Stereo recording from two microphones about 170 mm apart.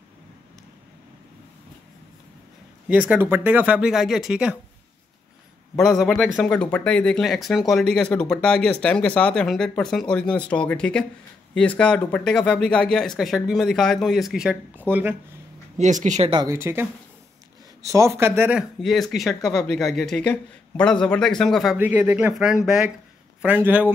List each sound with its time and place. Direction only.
2.9 s speech: 10° right (ahead or behind)
5.8 s speech: centre (ahead or behind)
15.8 s speech: 45° right (ahead or behind)
16.3 s speech: 25° right (ahead or behind)
16.5 s speech: 15° right (ahead or behind)
17.8 s speech: 15° right (ahead or behind); by 21.7 s centre (ahead or behind)
21.7 s speech: 10° right (ahead or behind)